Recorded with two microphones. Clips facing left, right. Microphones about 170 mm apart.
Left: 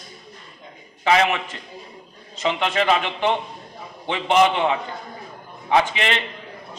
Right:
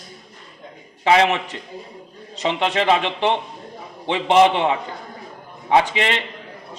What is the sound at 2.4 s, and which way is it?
A man's voice, 30° right (ahead or behind).